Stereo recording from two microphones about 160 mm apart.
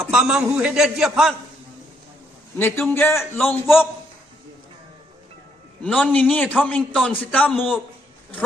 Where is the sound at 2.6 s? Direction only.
15° left (ahead or behind).